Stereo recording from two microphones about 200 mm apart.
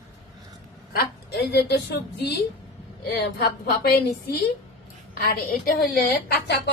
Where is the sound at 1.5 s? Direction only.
55° left (ahead or behind).